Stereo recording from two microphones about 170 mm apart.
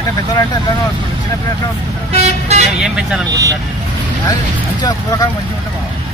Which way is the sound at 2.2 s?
40° right (ahead or behind).